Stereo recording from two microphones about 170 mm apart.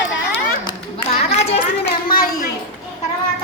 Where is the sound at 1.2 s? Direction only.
35° left (ahead or behind).